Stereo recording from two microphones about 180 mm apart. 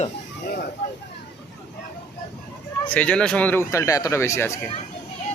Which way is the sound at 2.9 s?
5° left (ahead or behind).